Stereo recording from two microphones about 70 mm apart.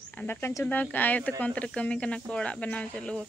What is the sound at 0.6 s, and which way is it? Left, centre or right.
Speech, left.